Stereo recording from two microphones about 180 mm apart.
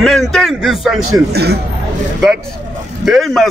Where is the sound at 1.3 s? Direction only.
65° right (ahead or behind).